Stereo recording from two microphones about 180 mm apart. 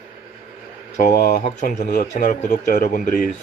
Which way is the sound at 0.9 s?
45° left (ahead or behind).